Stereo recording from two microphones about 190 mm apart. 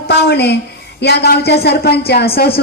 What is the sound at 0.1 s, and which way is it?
A woman's voice, 60° left (ahead or behind).